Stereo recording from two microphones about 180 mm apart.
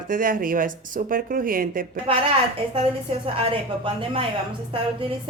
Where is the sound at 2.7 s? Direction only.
35° right (ahead or behind).